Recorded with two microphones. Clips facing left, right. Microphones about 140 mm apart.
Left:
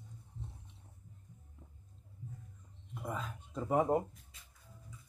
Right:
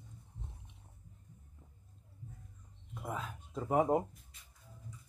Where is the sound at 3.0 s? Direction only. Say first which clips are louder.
Even; centre (ahead or behind).